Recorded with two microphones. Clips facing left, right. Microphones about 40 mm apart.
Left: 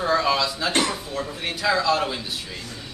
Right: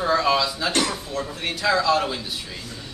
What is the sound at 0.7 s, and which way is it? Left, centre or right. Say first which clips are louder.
Speech: left 2 dB; left.